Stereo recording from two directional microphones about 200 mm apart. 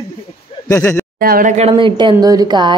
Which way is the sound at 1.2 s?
45° right (ahead or behind).